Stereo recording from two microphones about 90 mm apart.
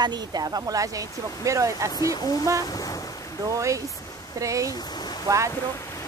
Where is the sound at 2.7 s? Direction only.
40° left (ahead or behind).